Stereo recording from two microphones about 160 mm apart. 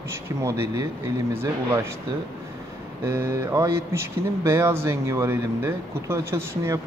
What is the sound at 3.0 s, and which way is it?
Speech, 15° right (ahead or behind).